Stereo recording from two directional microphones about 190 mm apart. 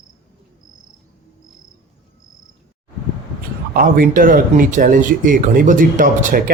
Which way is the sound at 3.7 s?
45° right (ahead or behind).